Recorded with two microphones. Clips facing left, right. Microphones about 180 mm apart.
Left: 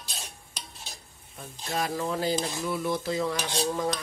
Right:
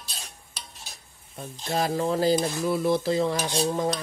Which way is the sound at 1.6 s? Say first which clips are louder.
Right 4 dB; 30° right (ahead or behind).